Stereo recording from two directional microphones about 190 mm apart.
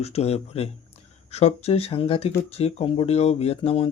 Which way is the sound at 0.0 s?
35° left (ahead or behind).